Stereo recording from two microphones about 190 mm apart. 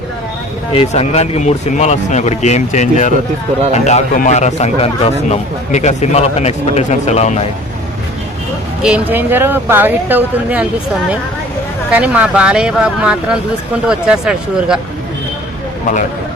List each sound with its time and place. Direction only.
0.7 s speech: 30° left (ahead or behind)
8.8 s speech: 5° right (ahead or behind)
11.9 s speech: 5° right (ahead or behind)